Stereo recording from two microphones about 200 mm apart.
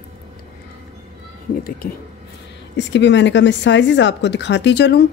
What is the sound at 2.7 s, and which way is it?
A woman's voice, 60° left (ahead or behind).